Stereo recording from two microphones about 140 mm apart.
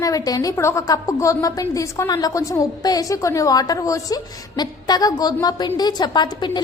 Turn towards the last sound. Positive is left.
turn(degrees=30)  # may be behind; listen again after turning